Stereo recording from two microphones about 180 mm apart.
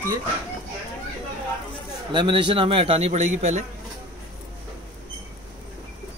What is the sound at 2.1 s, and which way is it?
A man's voice, 25° right (ahead or behind).